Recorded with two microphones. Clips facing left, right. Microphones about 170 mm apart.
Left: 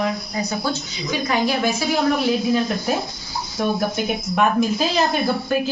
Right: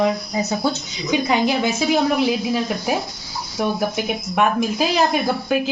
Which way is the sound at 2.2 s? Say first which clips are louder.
Left 1 dB; 5° right (ahead or behind).